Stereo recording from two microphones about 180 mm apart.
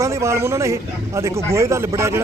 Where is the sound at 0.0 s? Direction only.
15° right (ahead or behind).